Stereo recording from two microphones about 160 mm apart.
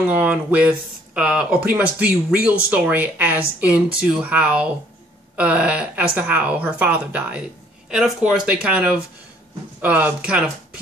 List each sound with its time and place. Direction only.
0.0 s speech: 10° right (ahead or behind)